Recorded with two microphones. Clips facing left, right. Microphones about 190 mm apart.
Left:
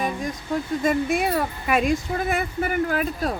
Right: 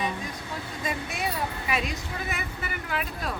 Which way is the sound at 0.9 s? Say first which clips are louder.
Left 9 dB; 50° left (ahead or behind).